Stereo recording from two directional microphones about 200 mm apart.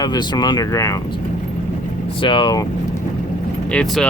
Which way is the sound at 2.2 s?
25° left (ahead or behind).